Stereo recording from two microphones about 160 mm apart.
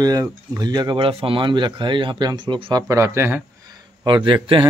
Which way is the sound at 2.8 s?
20° right (ahead or behind).